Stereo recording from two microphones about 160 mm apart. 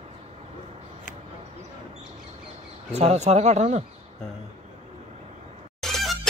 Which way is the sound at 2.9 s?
40° right (ahead or behind).